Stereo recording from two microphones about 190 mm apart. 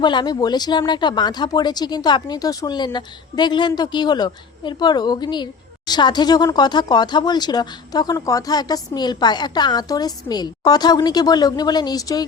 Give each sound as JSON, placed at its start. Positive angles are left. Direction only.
{"t": 0.0, "sound": "speech", "side_deg": 25}